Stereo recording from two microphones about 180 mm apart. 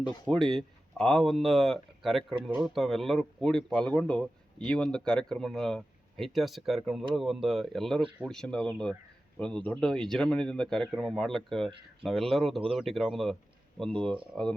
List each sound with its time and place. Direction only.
0.3 s speech: centre (ahead or behind)
14.3 s speech: 5° left (ahead or behind)